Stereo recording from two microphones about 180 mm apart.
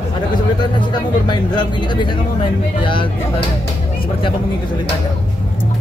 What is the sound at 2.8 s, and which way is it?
Speech, 25° left (ahead or behind).